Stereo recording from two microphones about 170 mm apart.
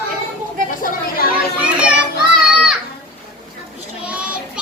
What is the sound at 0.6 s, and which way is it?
Chatter, 55° left (ahead or behind).